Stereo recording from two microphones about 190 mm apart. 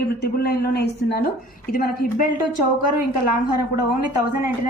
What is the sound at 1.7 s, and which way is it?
Speech, 45° left (ahead or behind).